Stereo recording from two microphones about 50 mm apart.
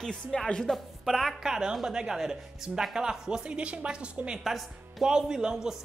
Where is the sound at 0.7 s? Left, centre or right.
Centre.